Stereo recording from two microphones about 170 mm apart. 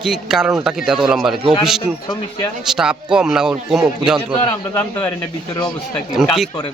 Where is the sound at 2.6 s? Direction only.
5° right (ahead or behind).